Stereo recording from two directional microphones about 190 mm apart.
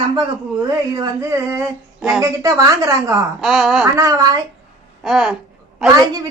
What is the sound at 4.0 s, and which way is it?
Speech, 15° right (ahead or behind).